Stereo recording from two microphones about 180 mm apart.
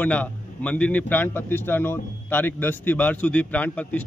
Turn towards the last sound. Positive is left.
turn(degrees=10)  # may be behind; listen again after turning